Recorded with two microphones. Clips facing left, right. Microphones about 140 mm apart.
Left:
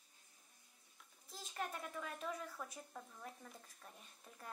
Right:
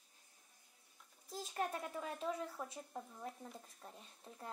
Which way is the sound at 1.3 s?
35° right (ahead or behind).